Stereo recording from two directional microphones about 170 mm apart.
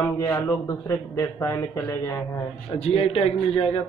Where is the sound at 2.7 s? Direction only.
35° left (ahead or behind).